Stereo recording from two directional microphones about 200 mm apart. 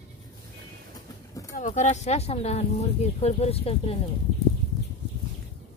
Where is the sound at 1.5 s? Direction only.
40° left (ahead or behind).